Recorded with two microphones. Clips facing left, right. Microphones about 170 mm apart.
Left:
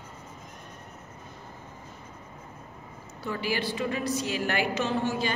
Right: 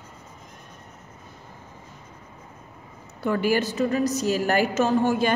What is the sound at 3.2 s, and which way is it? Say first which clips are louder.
A woman's voice: right 8 dB; 50° right (ahead or behind).